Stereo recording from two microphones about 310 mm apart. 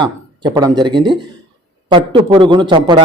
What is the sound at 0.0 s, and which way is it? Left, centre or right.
Speech, centre.